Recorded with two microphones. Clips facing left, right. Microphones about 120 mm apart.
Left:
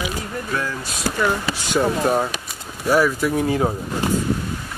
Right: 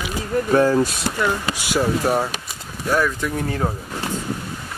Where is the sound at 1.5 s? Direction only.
10° right (ahead or behind); by 3.7 s 10° left (ahead or behind).